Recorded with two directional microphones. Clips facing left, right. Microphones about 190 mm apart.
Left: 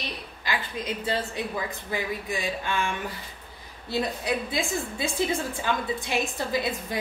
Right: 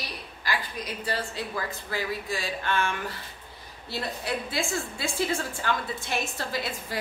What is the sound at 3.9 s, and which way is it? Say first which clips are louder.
A woman's voice: left 4 dB; 15° left (ahead or behind).